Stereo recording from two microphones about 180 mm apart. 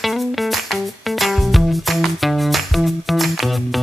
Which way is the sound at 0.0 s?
Centre (ahead or behind).